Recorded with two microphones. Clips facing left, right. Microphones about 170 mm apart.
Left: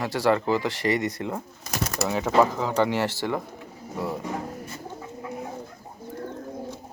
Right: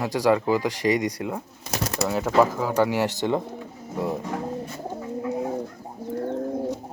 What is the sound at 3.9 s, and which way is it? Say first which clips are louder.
Bird: right 3 dB; 20° right (ahead or behind).